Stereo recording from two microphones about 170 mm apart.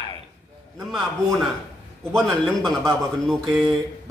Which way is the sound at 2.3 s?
Centre (ahead or behind).